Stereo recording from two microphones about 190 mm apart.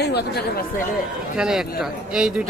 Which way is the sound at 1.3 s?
5° right (ahead or behind).